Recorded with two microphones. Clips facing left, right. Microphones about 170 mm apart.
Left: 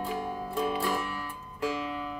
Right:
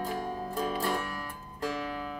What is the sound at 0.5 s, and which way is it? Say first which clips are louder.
Music: left 3 dB; 40° right (ahead or behind).